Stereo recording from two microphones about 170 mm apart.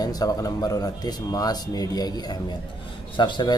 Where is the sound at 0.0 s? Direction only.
20° left (ahead or behind).